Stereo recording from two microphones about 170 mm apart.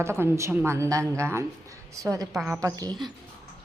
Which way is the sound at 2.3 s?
5° right (ahead or behind).